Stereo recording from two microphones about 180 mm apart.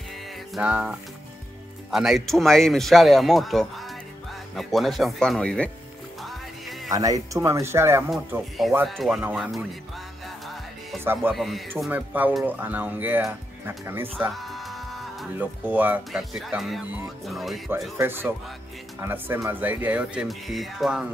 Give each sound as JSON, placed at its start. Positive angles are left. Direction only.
{"t": 0.6, "sound": "speech", "side_deg": -5}
{"t": 6.9, "sound": "speech", "side_deg": -20}
{"t": 8.8, "sound": "speech", "side_deg": 0}
{"t": 11.3, "sound": "speech", "side_deg": 0}
{"t": 14.2, "sound": "speech", "side_deg": 0}
{"t": 17.9, "sound": "speech", "side_deg": -10}